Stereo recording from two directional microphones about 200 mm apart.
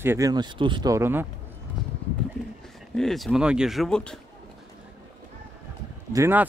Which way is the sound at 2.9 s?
Centre (ahead or behind).